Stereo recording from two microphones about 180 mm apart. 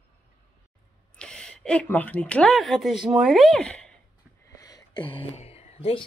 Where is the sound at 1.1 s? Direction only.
5° left (ahead or behind).